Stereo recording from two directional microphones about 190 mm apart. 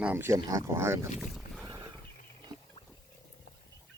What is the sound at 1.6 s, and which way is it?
Wild animals, 20° right (ahead or behind).